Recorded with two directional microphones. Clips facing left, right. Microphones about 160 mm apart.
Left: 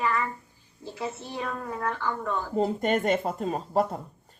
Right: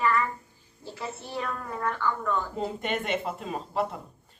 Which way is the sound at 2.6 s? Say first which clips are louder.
Left 6 dB; 40° left (ahead or behind).